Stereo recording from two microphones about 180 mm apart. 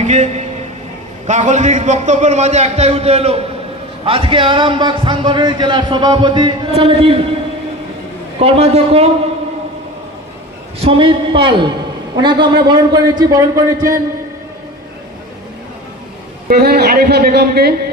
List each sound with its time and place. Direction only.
0.0 s a man's voice: 40° right (ahead or behind)
8.4 s a man's voice: 35° right (ahead or behind)
10.8 s a man's voice: 30° right (ahead or behind)
16.5 s a man's voice: 60° right (ahead or behind)